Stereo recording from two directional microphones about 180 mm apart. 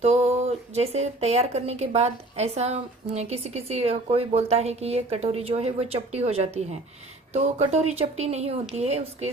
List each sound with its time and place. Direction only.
0.0 s speech: 35° right (ahead or behind)